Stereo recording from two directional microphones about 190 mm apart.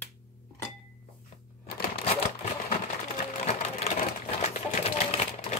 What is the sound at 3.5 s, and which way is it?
Typewriter, 35° left (ahead or behind).